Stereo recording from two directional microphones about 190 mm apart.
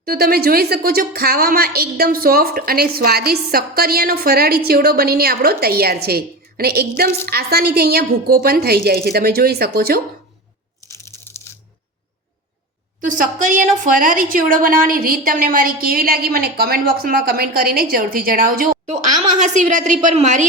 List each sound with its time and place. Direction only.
0.0 s a woman's voice: 55° right (ahead or behind)
10.8 s crushing: 15° left (ahead or behind)
11.5 s a sound: 15° left (ahead or behind)
13.0 s a woman's voice: 45° right (ahead or behind)